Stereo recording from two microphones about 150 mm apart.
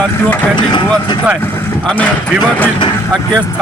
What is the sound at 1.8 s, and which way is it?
Speech, 10° left (ahead or behind).